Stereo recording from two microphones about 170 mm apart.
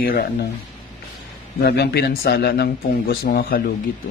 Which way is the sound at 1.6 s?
70° left (ahead or behind).